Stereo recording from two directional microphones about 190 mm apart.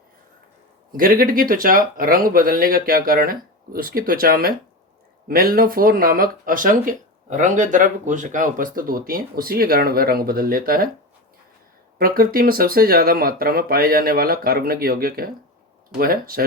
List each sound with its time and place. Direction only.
0.9 s speech: 50° right (ahead or behind)
11.9 s speech: 50° right (ahead or behind)